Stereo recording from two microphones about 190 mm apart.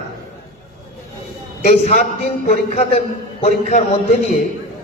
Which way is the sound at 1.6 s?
40° left (ahead or behind).